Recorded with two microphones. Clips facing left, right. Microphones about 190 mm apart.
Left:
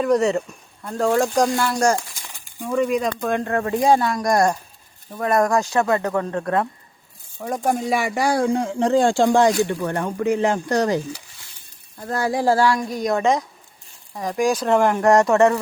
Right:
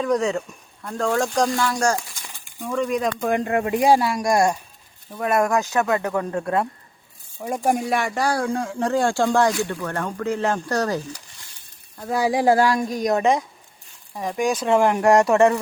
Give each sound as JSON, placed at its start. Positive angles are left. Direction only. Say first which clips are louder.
{"t": 0.0, "sound": "speech", "louder": "left 3 dB", "side_deg": 5}
{"t": 3.2, "sound": "speech", "louder": "right 1 dB", "side_deg": -15}
{"t": 7.9, "sound": "speech", "louder": "left 2 dB", "side_deg": 5}
{"t": 11.9, "sound": "speech", "louder": "right 1 dB", "side_deg": -10}
{"t": 14.1, "sound": "speech", "louder": "left 2 dB", "side_deg": -5}